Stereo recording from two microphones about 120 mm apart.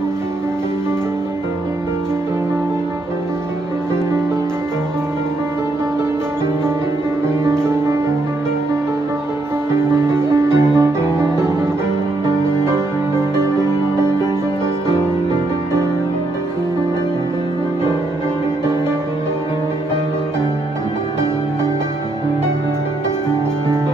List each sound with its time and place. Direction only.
10.0 s music: 20° right (ahead or behind)